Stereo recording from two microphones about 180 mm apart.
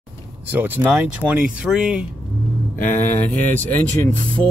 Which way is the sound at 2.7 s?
45° left (ahead or behind).